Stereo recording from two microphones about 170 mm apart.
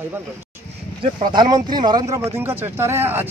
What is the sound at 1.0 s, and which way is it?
A man's voice, 25° right (ahead or behind).